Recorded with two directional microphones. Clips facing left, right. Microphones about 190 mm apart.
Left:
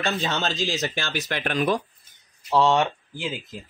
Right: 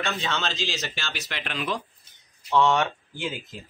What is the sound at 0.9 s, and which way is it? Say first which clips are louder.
Speech: left 7 dB; 50° left (ahead or behind).